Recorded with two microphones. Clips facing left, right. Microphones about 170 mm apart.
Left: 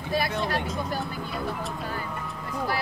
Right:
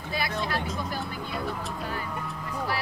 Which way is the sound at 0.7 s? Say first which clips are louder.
Left 2 dB; centre (ahead or behind).